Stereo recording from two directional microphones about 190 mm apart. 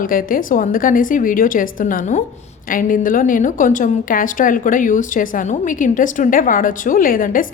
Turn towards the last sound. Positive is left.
turn(degrees=45)  # may be behind; listen again after turning